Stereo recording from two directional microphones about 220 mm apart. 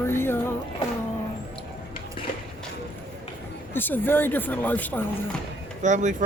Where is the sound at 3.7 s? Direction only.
10° left (ahead or behind).